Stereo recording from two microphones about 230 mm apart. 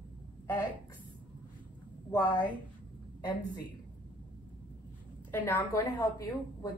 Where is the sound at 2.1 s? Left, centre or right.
Centre.